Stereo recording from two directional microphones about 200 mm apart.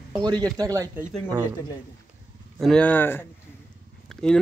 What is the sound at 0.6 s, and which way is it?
Speech, 15° right (ahead or behind).